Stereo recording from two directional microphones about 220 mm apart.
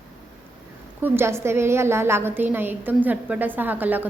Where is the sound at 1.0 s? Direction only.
10° right (ahead or behind).